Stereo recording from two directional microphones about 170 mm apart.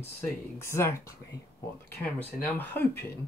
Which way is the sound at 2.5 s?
10° left (ahead or behind).